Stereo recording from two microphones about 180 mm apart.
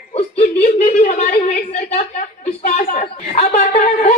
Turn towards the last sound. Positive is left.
turn(degrees=40)  # may be behind; listen again after turning